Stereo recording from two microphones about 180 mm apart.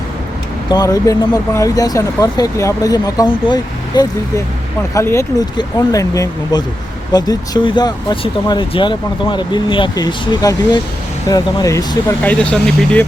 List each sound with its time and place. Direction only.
0.7 s speech: 20° left (ahead or behind)